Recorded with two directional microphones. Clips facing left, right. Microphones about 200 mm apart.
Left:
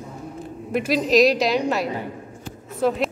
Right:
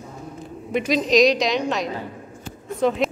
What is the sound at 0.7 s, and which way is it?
A woman's voice, 5° left (ahead or behind).